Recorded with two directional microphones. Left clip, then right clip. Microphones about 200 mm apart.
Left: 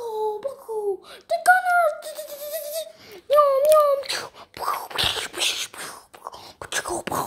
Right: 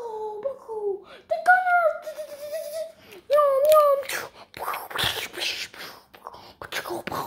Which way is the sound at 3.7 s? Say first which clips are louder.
Left 1 dB; 5° left (ahead or behind).